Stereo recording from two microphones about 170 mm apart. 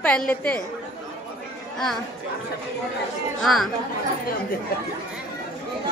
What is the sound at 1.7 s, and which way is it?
Speech, centre (ahead or behind).